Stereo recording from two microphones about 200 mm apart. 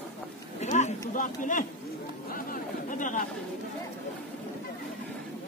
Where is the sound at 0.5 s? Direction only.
35° left (ahead or behind).